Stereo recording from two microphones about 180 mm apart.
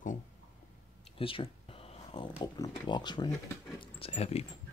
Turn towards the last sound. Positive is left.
turn(degrees=35)  # may be behind; listen again after turning